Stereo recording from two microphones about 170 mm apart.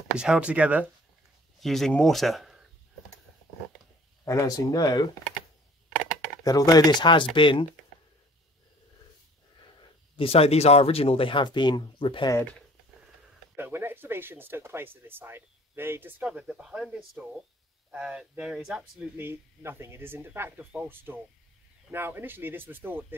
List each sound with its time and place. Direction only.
0.1 s speech: 5° right (ahead or behind)
4.2 s speech: 20° left (ahead or behind)
6.4 s speech: 20° left (ahead or behind)
10.1 s speech: 35° left (ahead or behind)
13.6 s speech: 15° right (ahead or behind)